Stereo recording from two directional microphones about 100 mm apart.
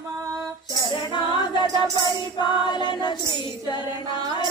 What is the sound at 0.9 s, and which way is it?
Music, 50° left (ahead or behind).